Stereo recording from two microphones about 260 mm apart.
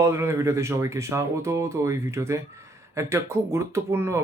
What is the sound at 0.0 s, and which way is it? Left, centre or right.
Speech, centre.